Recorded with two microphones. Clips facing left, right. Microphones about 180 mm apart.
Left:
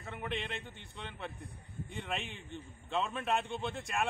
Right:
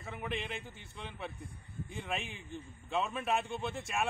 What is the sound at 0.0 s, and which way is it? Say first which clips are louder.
A man's voice: even; centre (ahead or behind).